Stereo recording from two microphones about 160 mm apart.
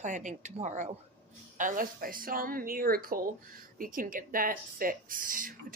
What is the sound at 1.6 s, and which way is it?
A woman's voice, 60° right (ahead or behind).